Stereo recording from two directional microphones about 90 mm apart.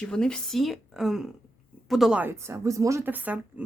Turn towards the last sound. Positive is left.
turn(degrees=-20)  # may be behind; listen again after turning